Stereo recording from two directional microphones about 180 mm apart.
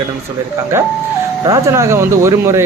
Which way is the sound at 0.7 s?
15° right (ahead or behind).